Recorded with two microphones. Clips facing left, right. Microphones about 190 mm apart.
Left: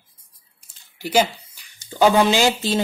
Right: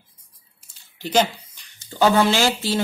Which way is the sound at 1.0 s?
10° left (ahead or behind).